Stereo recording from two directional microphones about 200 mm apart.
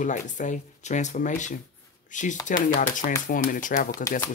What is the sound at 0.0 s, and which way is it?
Speech, 40° left (ahead or behind).